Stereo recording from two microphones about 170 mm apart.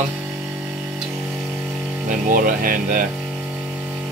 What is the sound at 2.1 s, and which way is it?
Speech, 50° right (ahead or behind).